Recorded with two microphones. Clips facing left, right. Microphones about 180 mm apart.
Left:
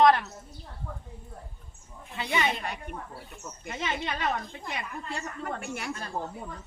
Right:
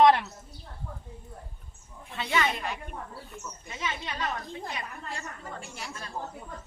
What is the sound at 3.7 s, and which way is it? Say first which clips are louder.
Speech: left 4 dB; 65° left (ahead or behind).